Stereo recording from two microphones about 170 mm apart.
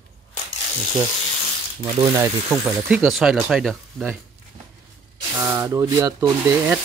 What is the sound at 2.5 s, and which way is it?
Speech, 5° right (ahead or behind).